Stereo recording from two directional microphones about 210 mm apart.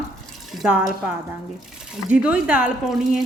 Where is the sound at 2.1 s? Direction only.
5° right (ahead or behind).